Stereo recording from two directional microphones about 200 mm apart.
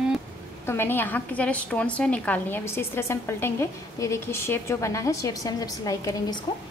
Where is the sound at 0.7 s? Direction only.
10° left (ahead or behind).